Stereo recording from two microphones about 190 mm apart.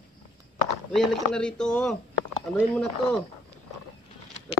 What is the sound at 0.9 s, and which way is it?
Speech, centre (ahead or behind).